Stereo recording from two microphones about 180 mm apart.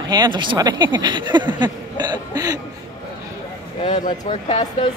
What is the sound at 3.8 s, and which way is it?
Speech, 40° left (ahead or behind).